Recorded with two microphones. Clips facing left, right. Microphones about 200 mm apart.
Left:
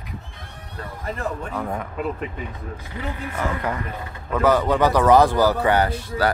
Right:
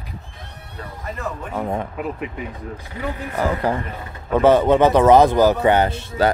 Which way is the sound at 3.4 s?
30° right (ahead or behind).